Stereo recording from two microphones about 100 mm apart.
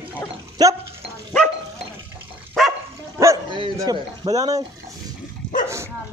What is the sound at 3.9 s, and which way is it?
Speech, 40° right (ahead or behind).